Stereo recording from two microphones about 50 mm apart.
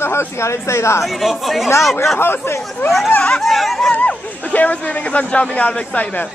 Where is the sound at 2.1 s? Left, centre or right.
Left.